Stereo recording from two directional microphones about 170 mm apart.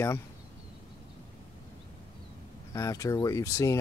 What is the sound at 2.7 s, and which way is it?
Speech, 20° left (ahead or behind).